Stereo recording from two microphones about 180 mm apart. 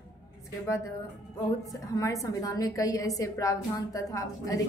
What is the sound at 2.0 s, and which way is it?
A woman's voice, 20° left (ahead or behind).